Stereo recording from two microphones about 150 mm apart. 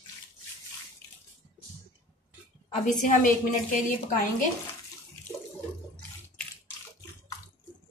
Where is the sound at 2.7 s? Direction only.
60° left (ahead or behind).